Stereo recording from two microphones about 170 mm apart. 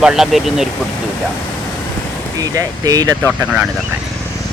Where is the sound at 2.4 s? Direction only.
20° right (ahead or behind).